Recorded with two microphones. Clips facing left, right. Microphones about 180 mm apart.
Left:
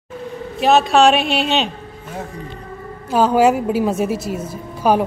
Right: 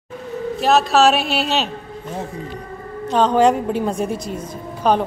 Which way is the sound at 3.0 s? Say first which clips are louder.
Left 1 dB; 10° left (ahead or behind).